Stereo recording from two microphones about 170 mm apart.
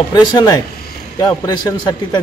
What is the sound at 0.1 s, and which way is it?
Speech, 25° left (ahead or behind).